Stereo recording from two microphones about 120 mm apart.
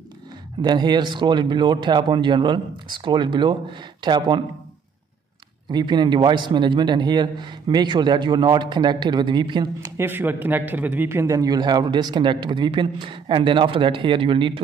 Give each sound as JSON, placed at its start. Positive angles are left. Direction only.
{"t": 0.6, "sound": "a man's voice", "side_deg": -35}
{"t": 5.7, "sound": "a man's voice", "side_deg": -40}
{"t": 9.9, "sound": "a man's voice", "side_deg": -15}